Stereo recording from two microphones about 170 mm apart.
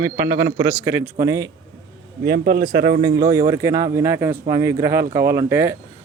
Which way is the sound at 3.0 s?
25° right (ahead or behind).